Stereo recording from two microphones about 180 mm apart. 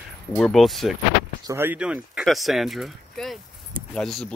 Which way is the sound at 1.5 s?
10° right (ahead or behind).